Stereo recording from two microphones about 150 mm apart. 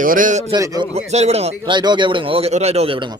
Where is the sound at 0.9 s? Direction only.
45° right (ahead or behind).